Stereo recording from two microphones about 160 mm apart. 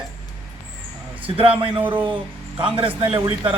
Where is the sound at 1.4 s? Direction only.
35° right (ahead or behind).